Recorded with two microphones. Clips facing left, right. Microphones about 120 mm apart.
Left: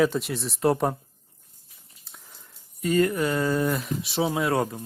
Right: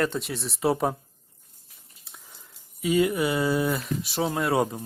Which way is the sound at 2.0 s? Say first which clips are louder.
Even; centre (ahead or behind).